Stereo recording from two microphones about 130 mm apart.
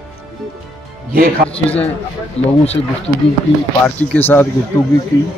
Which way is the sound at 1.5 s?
45° left (ahead or behind).